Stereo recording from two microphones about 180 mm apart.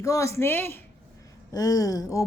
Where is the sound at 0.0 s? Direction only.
15° left (ahead or behind).